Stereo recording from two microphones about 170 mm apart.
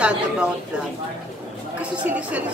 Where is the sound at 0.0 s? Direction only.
5° right (ahead or behind).